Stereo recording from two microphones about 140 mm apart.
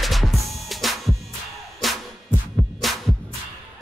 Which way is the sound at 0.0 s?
Centre (ahead or behind).